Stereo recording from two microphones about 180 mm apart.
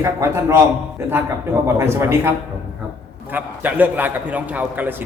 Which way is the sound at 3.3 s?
10° right (ahead or behind).